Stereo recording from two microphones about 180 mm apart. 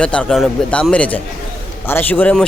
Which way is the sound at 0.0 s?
5° left (ahead or behind).